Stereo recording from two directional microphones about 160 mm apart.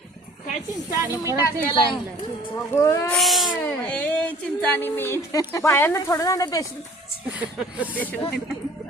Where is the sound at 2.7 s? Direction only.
15° left (ahead or behind).